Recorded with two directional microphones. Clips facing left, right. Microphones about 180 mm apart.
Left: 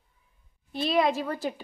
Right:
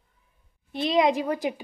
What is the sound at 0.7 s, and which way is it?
Speech, 20° right (ahead or behind).